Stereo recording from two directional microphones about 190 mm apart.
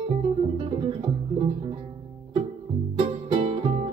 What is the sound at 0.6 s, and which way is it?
Music, 30° right (ahead or behind).